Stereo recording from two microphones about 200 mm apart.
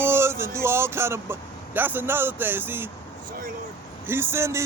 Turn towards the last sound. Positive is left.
turn(degrees=-15)  # may be behind; listen again after turning